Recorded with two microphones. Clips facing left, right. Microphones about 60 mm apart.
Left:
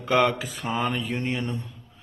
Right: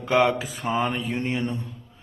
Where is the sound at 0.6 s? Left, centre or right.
Right.